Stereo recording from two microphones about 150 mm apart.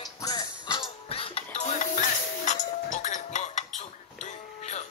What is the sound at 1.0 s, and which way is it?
Music, 40° left (ahead or behind).